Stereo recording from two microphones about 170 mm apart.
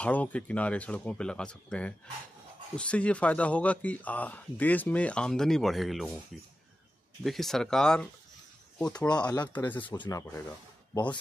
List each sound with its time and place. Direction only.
0.0 s speech: 10° left (ahead or behind)
7.2 s speech: centre (ahead or behind); by 10.4 s 20° left (ahead or behind)